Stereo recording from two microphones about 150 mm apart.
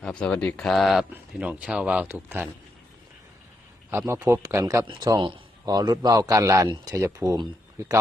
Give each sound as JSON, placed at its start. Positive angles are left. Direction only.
{"t": 0.0, "sound": "a man's voice", "side_deg": 5}
{"t": 3.8, "sound": "a man's voice", "side_deg": -15}